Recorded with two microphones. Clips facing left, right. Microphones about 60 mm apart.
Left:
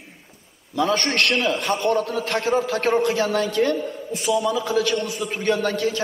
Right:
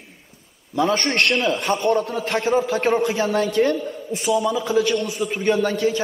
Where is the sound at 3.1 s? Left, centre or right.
Right.